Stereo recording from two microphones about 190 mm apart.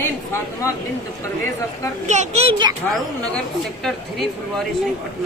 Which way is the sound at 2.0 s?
35° right (ahead or behind).